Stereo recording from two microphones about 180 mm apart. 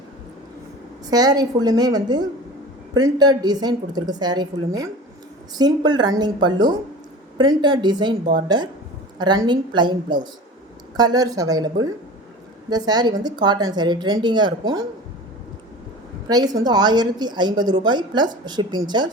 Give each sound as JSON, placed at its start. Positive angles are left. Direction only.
{"t": 1.1, "sound": "a woman's voice", "side_deg": -20}
{"t": 16.3, "sound": "a woman's voice", "side_deg": -20}